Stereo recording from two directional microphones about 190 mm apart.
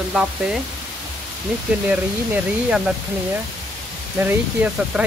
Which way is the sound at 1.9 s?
5° right (ahead or behind).